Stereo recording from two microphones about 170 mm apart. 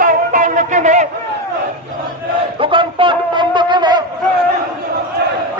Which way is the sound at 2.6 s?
30° right (ahead or behind).